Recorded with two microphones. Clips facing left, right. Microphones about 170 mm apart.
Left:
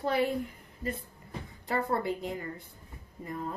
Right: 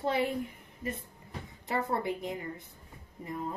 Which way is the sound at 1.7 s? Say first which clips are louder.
Left 1 dB; 20° right (ahead or behind).